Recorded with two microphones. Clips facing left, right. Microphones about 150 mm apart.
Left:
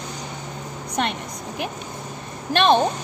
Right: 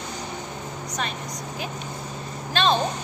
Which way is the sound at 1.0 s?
65° left (ahead or behind).